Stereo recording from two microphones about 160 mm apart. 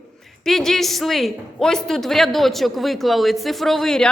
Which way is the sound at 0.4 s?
Centre (ahead or behind).